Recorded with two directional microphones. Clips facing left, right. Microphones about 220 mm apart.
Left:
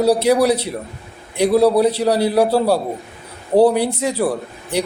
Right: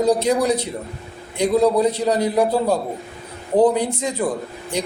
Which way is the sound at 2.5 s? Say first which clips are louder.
Left 3 dB; 80° left.